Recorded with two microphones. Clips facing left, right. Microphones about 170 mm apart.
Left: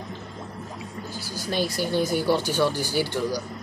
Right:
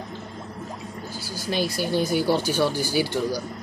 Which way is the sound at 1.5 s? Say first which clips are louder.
Right 1 dB; 5° right (ahead or behind).